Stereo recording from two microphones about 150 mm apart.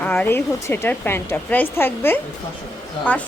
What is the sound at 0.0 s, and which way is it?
A woman's voice, 10° left (ahead or behind).